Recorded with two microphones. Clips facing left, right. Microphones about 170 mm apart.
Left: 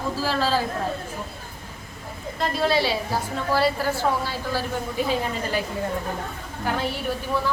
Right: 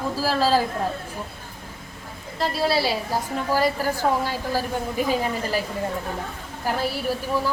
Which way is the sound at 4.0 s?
40° right (ahead or behind).